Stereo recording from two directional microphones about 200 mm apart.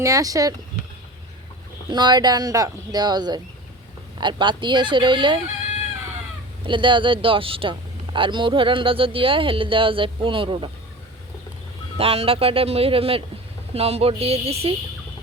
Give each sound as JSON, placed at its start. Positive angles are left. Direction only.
{"t": 0.0, "sound": "speech", "side_deg": -15}
{"t": 1.9, "sound": "speech", "side_deg": -20}
{"t": 6.7, "sound": "speech", "side_deg": -25}
{"t": 11.9, "sound": "speech", "side_deg": -30}
{"t": 13.7, "sound": "a sound", "side_deg": -30}